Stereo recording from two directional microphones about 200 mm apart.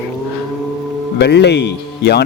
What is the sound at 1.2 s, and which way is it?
A man's voice, 55° left (ahead or behind).